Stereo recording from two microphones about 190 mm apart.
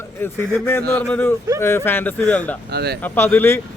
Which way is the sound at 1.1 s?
10° left (ahead or behind).